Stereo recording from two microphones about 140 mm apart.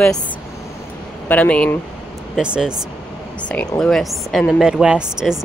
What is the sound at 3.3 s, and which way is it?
Speech, 10° left (ahead or behind).